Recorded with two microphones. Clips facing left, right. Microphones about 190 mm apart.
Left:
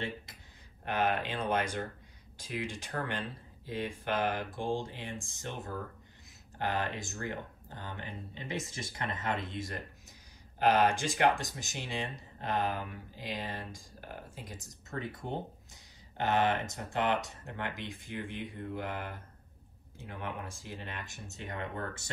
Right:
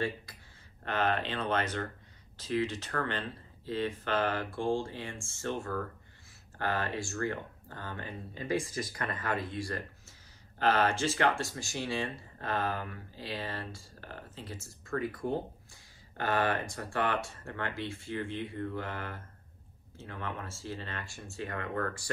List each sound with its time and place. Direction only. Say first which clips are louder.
0.8 s speech: even; 10° left (ahead or behind)